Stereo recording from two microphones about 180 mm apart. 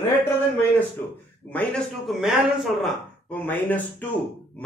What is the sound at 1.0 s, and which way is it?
Speech, 10° left (ahead or behind).